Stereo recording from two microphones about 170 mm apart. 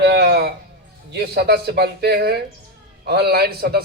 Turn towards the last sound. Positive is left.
turn(degrees=-70)  # may be behind; listen again after turning